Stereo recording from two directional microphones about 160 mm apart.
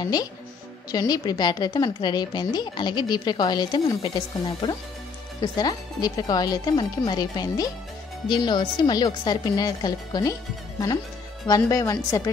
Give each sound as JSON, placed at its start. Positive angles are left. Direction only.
{"t": 0.0, "sound": "a woman's voice", "side_deg": 25}
{"t": 11.4, "sound": "a woman's voice", "side_deg": 20}